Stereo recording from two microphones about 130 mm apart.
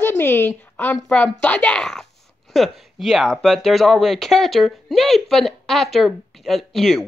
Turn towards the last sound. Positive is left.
turn(degrees=0)  # may be behind; listen again after turning